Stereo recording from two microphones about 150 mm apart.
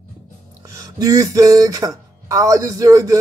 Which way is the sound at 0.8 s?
25° right (ahead or behind).